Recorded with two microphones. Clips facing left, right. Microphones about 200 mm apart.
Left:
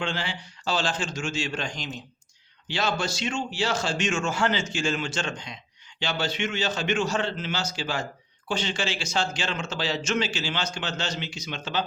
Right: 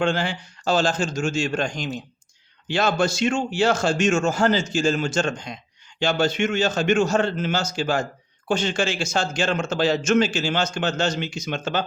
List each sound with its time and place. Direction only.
0.0 s a man's voice: 45° right (ahead or behind)